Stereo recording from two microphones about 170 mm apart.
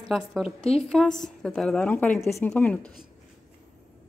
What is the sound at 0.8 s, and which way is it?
A woman's voice, 5° left (ahead or behind).